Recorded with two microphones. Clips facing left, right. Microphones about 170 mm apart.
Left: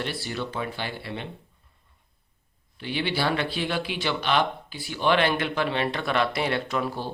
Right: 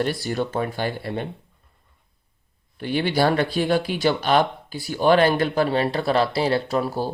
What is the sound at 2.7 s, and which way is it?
Speech, 45° right (ahead or behind).